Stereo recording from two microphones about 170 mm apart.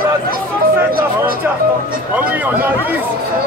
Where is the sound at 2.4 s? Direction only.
10° right (ahead or behind).